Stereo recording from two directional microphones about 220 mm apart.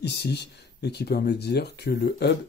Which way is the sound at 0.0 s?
50° left (ahead or behind).